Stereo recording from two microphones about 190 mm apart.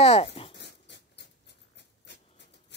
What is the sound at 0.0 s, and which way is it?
Dog, 30° left (ahead or behind).